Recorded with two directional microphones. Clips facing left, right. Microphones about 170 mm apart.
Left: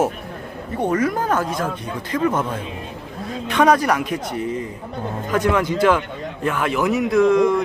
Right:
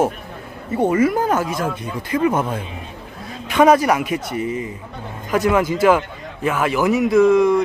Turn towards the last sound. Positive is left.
turn(degrees=0)  # may be behind; listen again after turning